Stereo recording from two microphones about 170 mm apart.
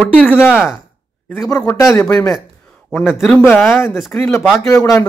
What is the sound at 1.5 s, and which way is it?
Speech, 15° left (ahead or behind).